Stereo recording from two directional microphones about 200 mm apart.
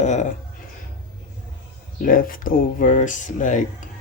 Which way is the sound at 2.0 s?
45° left (ahead or behind).